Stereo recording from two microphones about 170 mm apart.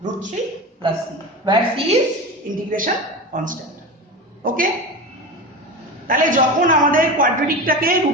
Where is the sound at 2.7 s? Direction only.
55° right (ahead or behind).